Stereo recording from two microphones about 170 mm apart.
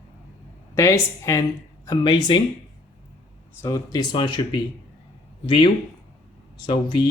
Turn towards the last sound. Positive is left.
turn(degrees=25)  # may be behind; listen again after turning